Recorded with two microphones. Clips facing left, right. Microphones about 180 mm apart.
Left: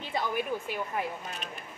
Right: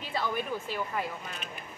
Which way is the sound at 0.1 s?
15° left (ahead or behind).